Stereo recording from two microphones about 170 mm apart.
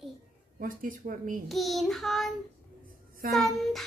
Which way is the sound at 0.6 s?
55° right (ahead or behind).